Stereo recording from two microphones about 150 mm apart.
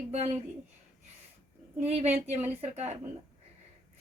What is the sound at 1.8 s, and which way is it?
Speech, 45° right (ahead or behind).